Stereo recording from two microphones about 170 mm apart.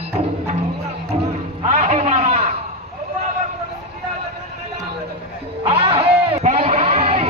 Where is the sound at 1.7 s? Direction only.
40° right (ahead or behind).